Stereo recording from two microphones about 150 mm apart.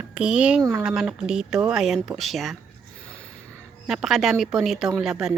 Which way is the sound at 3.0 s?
10° left (ahead or behind).